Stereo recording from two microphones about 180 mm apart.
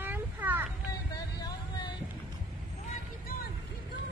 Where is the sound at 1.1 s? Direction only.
25° left (ahead or behind).